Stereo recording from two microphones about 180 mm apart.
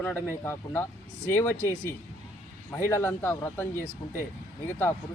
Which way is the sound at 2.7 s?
15° left (ahead or behind).